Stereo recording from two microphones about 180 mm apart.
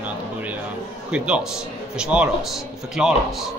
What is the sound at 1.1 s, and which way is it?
A man's voice, 5° right (ahead or behind).